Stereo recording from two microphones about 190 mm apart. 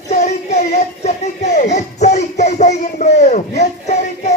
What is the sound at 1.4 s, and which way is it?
Music, 35° left (ahead or behind).